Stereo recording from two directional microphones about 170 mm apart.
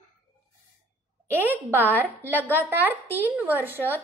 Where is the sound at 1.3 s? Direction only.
10° right (ahead or behind).